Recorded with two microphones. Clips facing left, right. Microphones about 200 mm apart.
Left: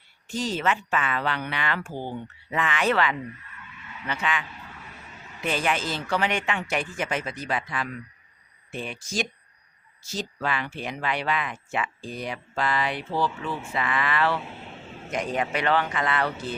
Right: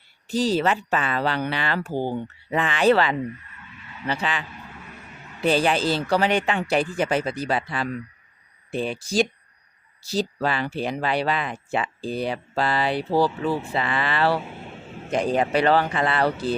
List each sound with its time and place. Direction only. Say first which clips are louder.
0.3 s speech: right 5 dB; 35° right (ahead or behind)